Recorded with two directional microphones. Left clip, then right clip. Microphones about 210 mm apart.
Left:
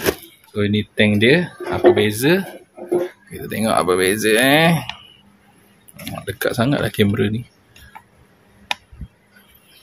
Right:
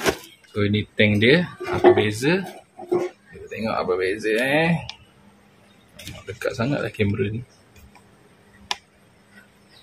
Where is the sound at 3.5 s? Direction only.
40° left (ahead or behind).